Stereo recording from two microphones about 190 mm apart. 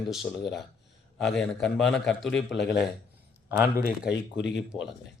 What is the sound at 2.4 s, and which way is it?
Speech, 65° left (ahead or behind).